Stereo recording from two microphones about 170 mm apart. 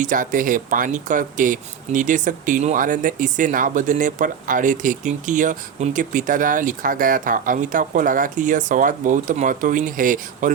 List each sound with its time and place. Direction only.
0.0 s speech: 50° right (ahead or behind)